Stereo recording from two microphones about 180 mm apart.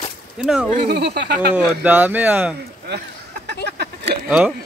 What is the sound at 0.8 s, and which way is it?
Speech, 65° right (ahead or behind).